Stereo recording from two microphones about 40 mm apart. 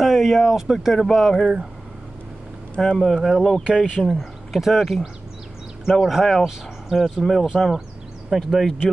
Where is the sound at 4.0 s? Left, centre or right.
Centre.